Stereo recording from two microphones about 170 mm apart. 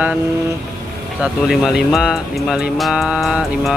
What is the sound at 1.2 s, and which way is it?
Speech, 5° right (ahead or behind).